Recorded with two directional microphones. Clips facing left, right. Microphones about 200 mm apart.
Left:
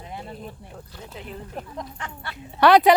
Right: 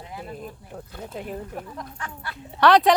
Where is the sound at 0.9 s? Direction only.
50° right (ahead or behind).